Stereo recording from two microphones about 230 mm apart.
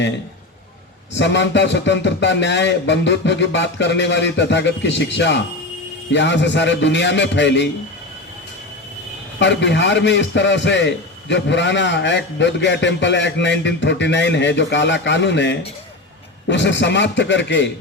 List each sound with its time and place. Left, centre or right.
1.1 s a man's voice: left
9.4 s a man's voice: left